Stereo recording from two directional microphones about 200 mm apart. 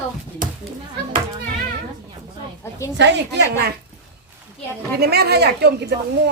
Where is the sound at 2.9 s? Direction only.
60° right (ahead or behind).